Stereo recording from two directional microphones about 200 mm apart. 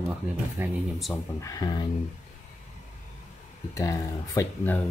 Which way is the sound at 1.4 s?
15° left (ahead or behind).